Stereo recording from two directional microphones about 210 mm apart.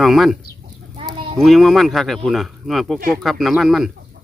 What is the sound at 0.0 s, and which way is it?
Speech, centre (ahead or behind).